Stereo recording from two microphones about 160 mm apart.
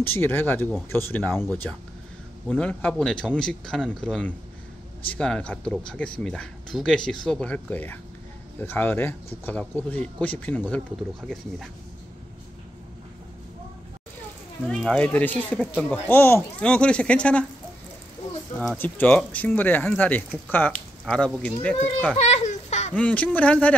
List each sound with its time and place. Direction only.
0.0 s speech: 15° left (ahead or behind)
14.7 s speech: 5° left (ahead or behind)
18.6 s speech: 10° left (ahead or behind)
22.2 s a sound: 45° left (ahead or behind)
22.9 s speech: 10° left (ahead or behind)